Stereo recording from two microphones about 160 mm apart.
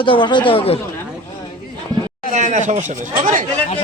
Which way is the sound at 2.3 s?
50° right (ahead or behind).